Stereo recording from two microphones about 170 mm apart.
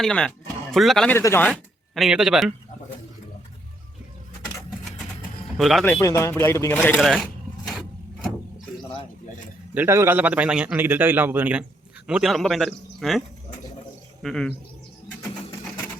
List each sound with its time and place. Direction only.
0.0 s speech: 5° left (ahead or behind)
2.0 s speech: centre (ahead or behind)
5.5 s a man's voice: centre (ahead or behind)
5.8 s speech: 15° left (ahead or behind)
6.8 s speech: 5° left (ahead or behind)
9.7 s a man's voice: 15° right (ahead or behind); by 14.5 s 5° left (ahead or behind)